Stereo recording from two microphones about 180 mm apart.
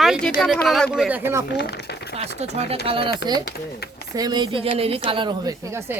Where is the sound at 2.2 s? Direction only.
35° right (ahead or behind).